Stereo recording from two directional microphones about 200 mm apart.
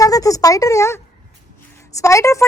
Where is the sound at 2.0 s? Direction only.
15° left (ahead or behind).